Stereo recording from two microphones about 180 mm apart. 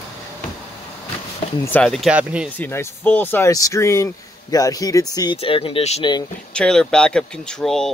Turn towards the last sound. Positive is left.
turn(degrees=5)  # may be behind; listen again after turning